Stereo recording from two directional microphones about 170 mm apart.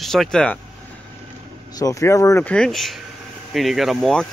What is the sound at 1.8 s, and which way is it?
Speech, 20° left (ahead or behind).